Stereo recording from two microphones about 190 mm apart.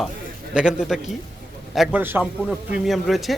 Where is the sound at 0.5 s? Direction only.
5° right (ahead or behind).